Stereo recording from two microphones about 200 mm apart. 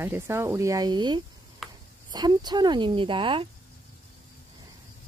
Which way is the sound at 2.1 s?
20° right (ahead or behind).